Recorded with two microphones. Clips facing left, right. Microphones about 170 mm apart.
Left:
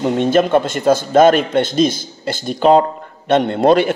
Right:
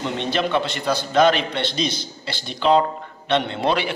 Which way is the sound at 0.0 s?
45° left (ahead or behind).